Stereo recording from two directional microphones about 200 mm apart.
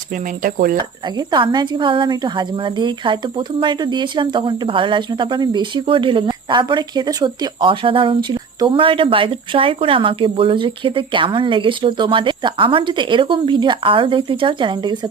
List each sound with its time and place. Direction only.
0.4 s speech: 45° right (ahead or behind)
1.3 s a woman's voice: 20° right (ahead or behind)